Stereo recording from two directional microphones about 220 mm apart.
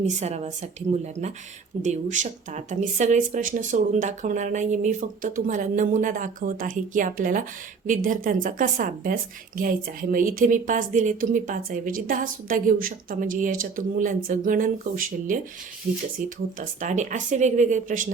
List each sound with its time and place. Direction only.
0.2 s a woman's voice: 30° right (ahead or behind)